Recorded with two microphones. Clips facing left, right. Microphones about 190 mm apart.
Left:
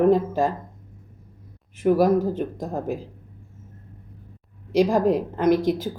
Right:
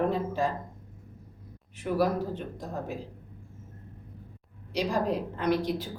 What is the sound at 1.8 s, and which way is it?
A woman's voice, 45° left (ahead or behind).